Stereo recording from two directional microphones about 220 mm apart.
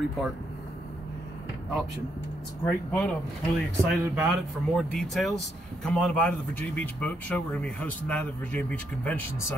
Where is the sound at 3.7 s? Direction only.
10° right (ahead or behind).